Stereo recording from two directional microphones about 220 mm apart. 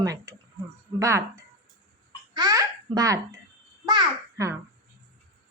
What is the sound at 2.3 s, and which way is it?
Babbling, 20° right (ahead or behind).